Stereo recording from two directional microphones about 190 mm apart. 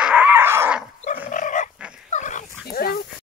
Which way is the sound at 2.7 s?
55° left (ahead or behind).